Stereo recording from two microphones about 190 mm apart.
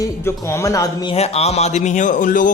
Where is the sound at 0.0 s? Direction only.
15° left (ahead or behind).